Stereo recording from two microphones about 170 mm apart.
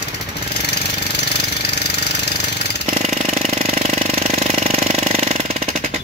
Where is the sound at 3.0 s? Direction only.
45° right (ahead or behind).